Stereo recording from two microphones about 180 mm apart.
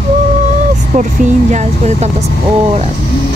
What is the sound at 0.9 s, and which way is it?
Speech, 40° right (ahead or behind).